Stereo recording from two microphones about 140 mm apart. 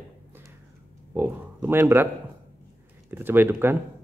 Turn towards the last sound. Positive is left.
turn(degrees=-15)  # may be behind; listen again after turning